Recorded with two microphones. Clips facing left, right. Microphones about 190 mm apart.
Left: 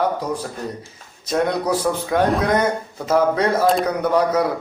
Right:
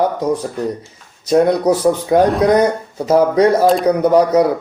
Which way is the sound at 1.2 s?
30° right (ahead or behind).